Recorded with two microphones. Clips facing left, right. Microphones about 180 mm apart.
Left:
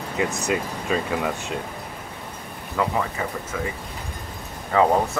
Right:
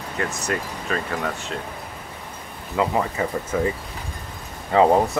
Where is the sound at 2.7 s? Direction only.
20° right (ahead or behind).